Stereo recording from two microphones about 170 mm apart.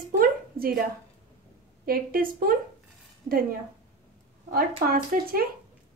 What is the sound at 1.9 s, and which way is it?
A woman's voice, 60° right (ahead or behind).